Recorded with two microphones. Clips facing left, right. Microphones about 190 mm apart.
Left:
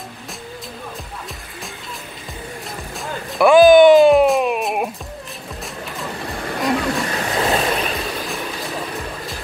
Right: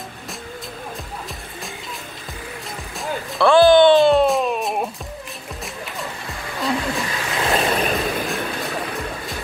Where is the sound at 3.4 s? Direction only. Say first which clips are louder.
Left 3 dB; 15° left (ahead or behind).